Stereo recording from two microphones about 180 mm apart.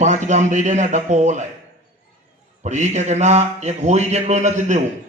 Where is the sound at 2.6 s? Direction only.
40° right (ahead or behind).